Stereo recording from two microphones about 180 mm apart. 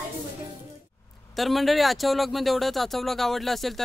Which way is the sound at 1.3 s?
Centre (ahead or behind).